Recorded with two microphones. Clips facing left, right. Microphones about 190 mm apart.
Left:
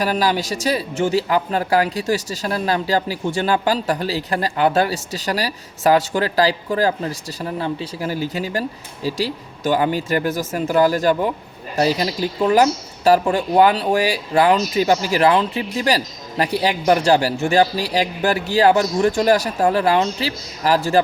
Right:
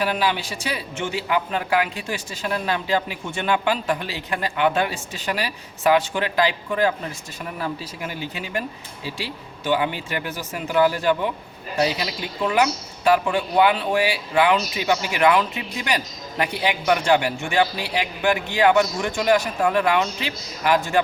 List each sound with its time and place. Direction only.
0.0 s speech: 40° left (ahead or behind)